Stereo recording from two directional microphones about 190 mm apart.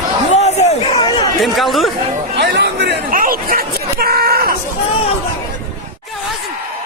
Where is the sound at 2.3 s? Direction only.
70° right (ahead or behind).